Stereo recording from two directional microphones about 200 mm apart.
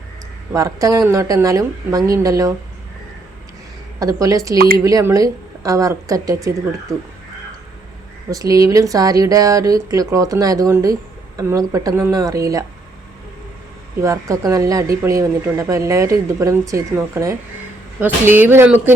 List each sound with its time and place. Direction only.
0.5 s speech: 15° right (ahead or behind)
4.0 s speech: 15° right (ahead or behind)
4.5 s speech: 50° right (ahead or behind)
4.8 s speech: 15° right (ahead or behind)
8.3 s speech: 15° right (ahead or behind)
14.0 s speech: 15° right (ahead or behind)